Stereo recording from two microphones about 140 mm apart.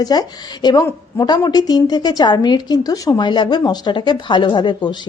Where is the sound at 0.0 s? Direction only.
30° left (ahead or behind).